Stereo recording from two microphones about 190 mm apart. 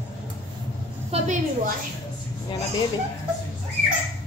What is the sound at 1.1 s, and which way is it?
Speech, 35° right (ahead or behind).